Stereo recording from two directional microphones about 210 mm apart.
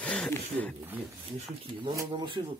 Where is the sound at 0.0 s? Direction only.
5° left (ahead or behind).